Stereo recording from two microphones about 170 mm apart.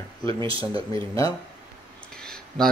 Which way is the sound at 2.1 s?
5° left (ahead or behind).